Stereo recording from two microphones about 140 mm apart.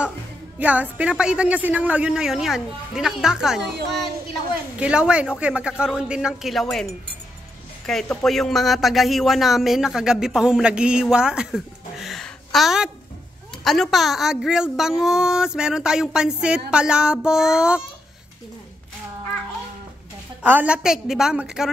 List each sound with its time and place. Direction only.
0.6 s speech: 10° right (ahead or behind)
4.7 s speech: 5° right (ahead or behind)
20.4 s speech: 10° right (ahead or behind)